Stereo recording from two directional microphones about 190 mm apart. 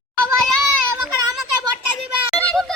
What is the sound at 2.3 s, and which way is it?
Children playing, 5° left (ahead or behind).